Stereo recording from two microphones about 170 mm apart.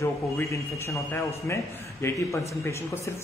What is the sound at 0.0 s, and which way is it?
A man's voice, 15° left (ahead or behind).